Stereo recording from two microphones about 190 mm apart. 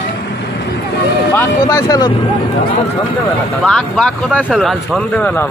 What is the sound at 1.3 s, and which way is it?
Speech, 15° left (ahead or behind).